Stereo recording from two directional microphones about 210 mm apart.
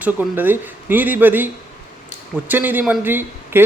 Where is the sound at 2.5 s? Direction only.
10° right (ahead or behind).